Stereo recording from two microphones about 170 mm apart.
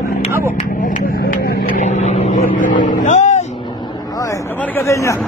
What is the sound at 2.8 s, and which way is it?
Vehicle, 50° left (ahead or behind).